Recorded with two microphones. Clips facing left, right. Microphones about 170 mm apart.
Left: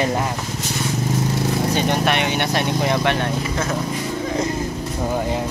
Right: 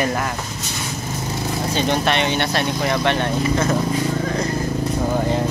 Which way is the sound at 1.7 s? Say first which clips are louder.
Right 3 dB; 15° left (ahead or behind).